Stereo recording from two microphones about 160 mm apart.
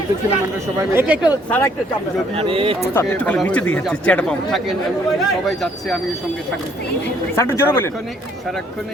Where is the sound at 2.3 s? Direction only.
35° right (ahead or behind).